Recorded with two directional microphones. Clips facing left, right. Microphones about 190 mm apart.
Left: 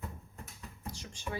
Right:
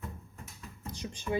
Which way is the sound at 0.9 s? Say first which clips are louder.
Right 8 dB; 20° right (ahead or behind).